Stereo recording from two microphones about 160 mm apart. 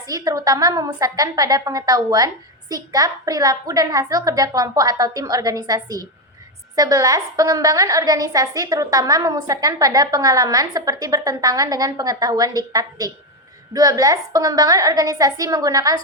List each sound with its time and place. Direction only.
0.0 s a woman's voice: 20° right (ahead or behind)